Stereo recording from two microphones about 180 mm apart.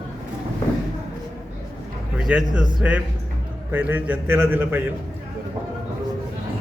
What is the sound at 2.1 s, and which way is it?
A man's voice, 5° right (ahead or behind).